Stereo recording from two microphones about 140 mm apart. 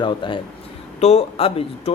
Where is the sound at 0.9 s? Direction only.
50° left (ahead or behind).